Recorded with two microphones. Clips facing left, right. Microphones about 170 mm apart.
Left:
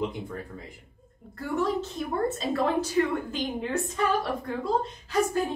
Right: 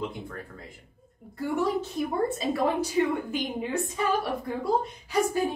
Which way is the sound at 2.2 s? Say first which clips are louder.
Left 2 dB; 10° right (ahead or behind).